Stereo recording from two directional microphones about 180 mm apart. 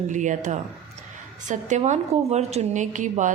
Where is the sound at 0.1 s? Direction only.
45° right (ahead or behind).